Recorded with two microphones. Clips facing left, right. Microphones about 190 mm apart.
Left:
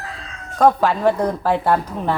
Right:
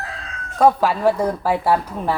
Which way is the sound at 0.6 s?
5° right (ahead or behind).